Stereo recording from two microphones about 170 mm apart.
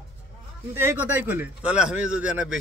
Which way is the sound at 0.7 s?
10° right (ahead or behind).